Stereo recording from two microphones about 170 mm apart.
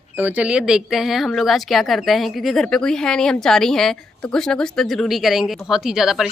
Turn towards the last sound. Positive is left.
turn(degrees=-5)  # may be behind; listen again after turning